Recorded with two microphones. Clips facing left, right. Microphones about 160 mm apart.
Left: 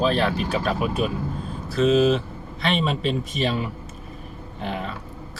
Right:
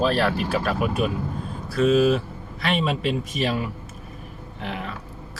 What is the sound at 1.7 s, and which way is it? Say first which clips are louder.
Speech: even; 25° left (ahead or behind).